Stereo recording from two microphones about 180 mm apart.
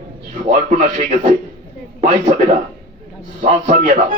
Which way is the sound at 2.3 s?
50° right (ahead or behind).